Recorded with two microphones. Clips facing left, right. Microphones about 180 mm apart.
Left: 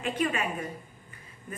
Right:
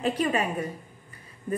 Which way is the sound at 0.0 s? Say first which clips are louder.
Right 4 dB; 35° right (ahead or behind).